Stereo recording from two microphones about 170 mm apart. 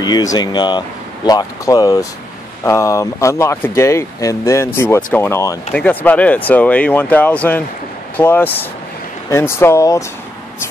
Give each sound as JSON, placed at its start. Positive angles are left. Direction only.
{"t": 0.0, "sound": "speech", "side_deg": 20}